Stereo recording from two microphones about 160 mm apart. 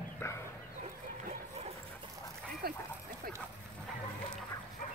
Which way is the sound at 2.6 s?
75° right (ahead or behind).